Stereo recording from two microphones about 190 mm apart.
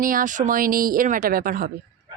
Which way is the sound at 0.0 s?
45° right (ahead or behind).